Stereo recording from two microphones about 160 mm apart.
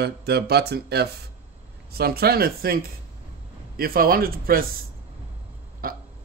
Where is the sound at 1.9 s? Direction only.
75° right (ahead or behind).